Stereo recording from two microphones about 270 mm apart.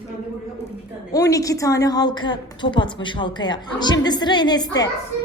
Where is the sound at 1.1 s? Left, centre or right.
Centre.